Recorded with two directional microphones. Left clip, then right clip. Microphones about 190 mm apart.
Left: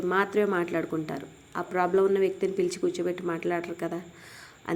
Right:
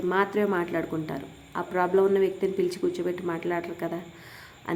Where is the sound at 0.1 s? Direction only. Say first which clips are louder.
Even; 20° left (ahead or behind).